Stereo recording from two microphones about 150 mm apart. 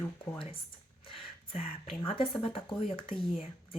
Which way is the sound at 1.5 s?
40° left (ahead or behind).